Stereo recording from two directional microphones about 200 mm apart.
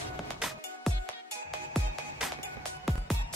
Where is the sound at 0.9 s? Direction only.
Centre (ahead or behind).